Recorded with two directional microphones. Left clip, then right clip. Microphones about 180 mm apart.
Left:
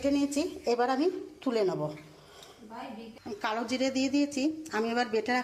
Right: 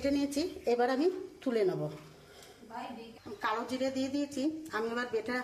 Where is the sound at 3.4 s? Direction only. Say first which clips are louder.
Left 2 dB; 20° left (ahead or behind).